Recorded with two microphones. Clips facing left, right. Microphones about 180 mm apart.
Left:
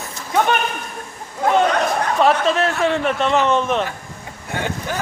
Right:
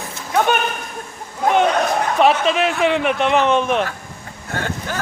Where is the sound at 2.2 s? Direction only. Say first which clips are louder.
Right 1 dB; 20° right (ahead or behind).